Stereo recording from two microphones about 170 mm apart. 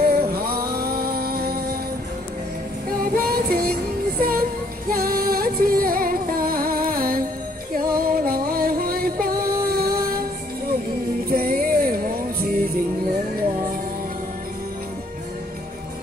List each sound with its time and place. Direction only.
0.0 s music: 60° right (ahead or behind)
3.0 s music: 60° right (ahead or behind)
11.2 s music: 60° right (ahead or behind)